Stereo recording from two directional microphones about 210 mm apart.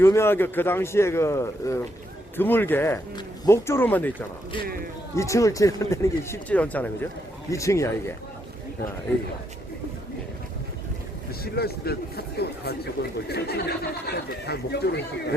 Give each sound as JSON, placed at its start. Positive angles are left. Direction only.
{"t": 0.0, "sound": "speech", "side_deg": 10}
{"t": 4.6, "sound": "speech", "side_deg": -45}
{"t": 5.1, "sound": "speech", "side_deg": 15}
{"t": 11.4, "sound": "speech", "side_deg": 50}